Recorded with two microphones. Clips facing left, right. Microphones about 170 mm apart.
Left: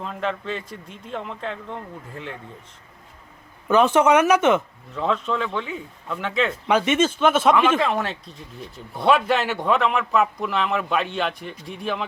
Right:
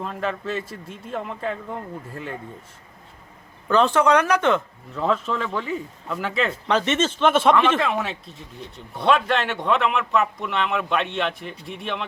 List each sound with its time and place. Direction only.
0.0 s speech: centre (ahead or behind)
3.7 s speech: 15° left (ahead or behind)
4.9 s speech: 5° right (ahead or behind)
6.7 s speech: 10° left (ahead or behind)